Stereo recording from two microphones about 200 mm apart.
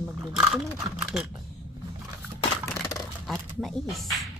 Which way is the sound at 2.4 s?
20° left (ahead or behind).